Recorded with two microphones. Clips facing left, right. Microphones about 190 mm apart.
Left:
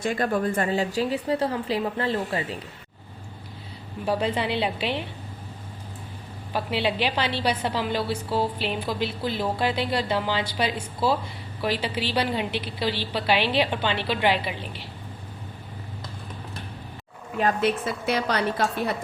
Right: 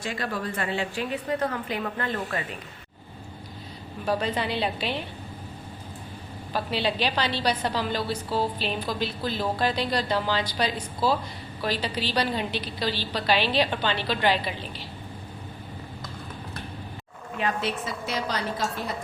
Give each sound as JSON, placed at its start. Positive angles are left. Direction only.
{"t": 0.0, "sound": "a woman's voice", "side_deg": 45}
{"t": 4.0, "sound": "a woman's voice", "side_deg": 10}
{"t": 6.5, "sound": "a woman's voice", "side_deg": 15}
{"t": 17.4, "sound": "a woman's voice", "side_deg": 55}